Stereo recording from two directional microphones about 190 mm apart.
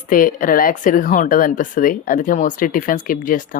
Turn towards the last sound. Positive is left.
turn(degrees=45)  # may be behind; listen again after turning